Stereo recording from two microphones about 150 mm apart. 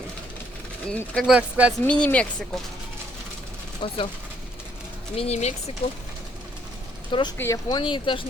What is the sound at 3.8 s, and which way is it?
Speech, 35° left (ahead or behind).